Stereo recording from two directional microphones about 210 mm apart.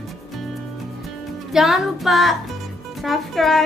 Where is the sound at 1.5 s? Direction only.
Centre (ahead or behind).